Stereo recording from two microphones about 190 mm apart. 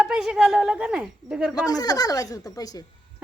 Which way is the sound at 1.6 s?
20° left (ahead or behind).